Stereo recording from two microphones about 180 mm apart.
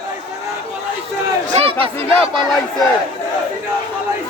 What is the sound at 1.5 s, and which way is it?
Speech, 35° right (ahead or behind).